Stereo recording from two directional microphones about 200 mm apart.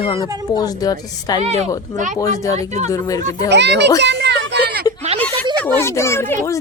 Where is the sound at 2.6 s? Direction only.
35° right (ahead or behind).